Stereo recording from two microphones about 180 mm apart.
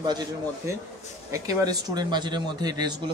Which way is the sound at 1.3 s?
20° right (ahead or behind).